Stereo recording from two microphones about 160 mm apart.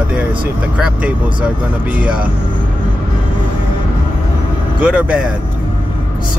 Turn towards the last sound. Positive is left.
turn(degrees=-5)  # may be behind; listen again after turning